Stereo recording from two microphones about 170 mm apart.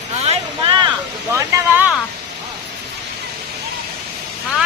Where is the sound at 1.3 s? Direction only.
15° right (ahead or behind).